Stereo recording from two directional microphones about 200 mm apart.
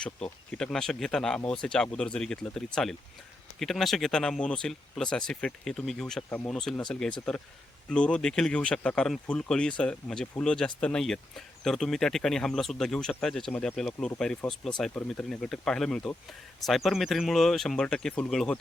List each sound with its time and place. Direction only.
0.0 s speech: 5° left (ahead or behind)